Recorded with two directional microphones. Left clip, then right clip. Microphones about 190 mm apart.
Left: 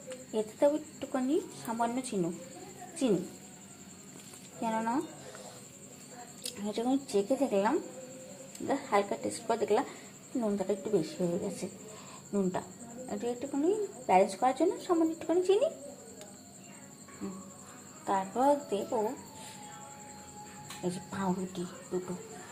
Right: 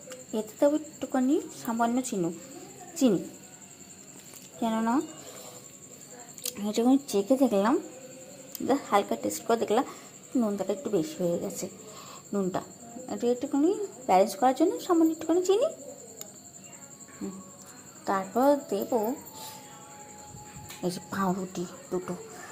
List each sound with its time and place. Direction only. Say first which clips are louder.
0.3 s speech: right 3 dB; 20° right (ahead or behind)
4.6 s speech: right 4 dB; 20° right (ahead or behind)
6.4 s speech: right 7 dB; 25° right (ahead or behind)
18.0 s speech: right 3 dB; 30° right (ahead or behind)
20.8 s a woman's voice: right 5 dB; 30° right (ahead or behind)